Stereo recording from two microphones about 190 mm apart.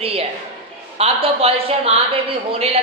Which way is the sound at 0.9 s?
30° right (ahead or behind).